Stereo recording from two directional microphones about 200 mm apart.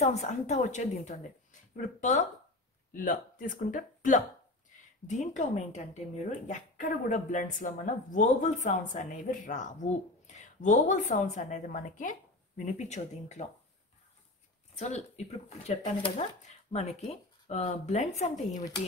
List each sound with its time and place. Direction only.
0.0 s speech: 35° left (ahead or behind)
14.8 s speech: 35° left (ahead or behind)